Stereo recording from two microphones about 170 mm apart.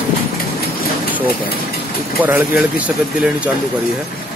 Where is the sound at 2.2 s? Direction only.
10° right (ahead or behind).